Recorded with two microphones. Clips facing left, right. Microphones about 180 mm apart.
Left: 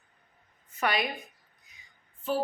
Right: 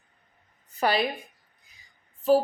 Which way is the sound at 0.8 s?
30° right (ahead or behind).